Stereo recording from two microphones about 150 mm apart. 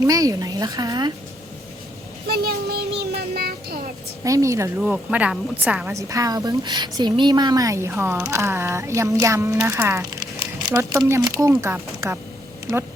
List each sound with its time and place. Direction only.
0.0 s speech: 25° right (ahead or behind)
2.2 s speech: 90° right
4.2 s speech: 20° right (ahead or behind)
4.8 s speech: 10° right (ahead or behind)
5.9 s speech: 20° right (ahead or behind)